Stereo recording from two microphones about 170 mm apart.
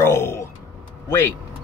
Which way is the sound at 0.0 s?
15° left (ahead or behind).